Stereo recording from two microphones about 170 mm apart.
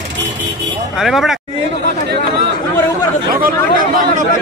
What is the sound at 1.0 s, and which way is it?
Speech, centre (ahead or behind).